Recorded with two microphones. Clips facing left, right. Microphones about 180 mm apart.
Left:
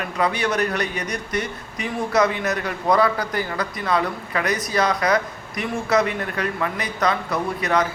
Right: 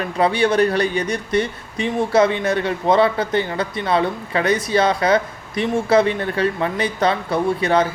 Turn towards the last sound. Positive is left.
turn(degrees=-30)  # may be behind; listen again after turning